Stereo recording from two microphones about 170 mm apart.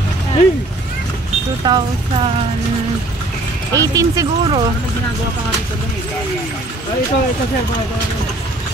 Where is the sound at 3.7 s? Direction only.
20° right (ahead or behind).